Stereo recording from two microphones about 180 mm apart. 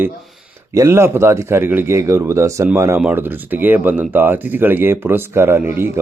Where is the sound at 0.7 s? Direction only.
15° right (ahead or behind).